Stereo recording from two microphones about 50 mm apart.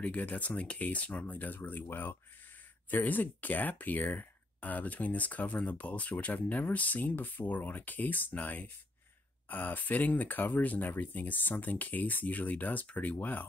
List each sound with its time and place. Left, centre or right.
0.0 s speech: left